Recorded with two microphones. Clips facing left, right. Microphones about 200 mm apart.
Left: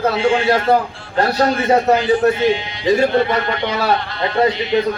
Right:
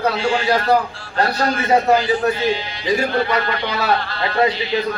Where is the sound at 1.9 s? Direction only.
25° left (ahead or behind).